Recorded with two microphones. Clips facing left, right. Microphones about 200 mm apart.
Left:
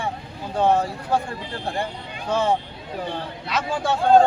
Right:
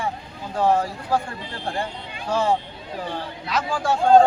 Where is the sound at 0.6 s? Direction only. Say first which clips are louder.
Left 1 dB; 20° left (ahead or behind).